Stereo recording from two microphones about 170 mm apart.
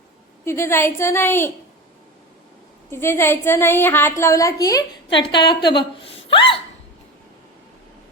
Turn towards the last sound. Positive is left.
turn(degrees=30)  # may be behind; listen again after turning